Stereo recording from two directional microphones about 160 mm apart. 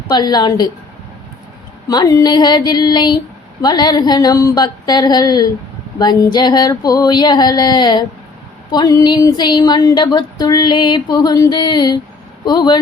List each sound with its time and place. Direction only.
0.1 s speech: 25° left (ahead or behind)
1.9 s speech: 25° left (ahead or behind)